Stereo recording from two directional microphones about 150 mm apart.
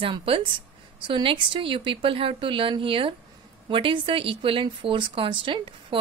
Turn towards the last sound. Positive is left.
turn(degrees=-35)  # may be behind; listen again after turning